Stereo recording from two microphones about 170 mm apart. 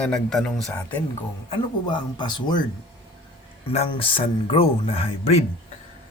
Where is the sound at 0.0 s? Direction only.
5° left (ahead or behind).